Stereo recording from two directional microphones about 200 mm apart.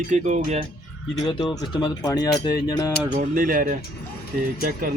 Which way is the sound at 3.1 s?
50° right (ahead or behind).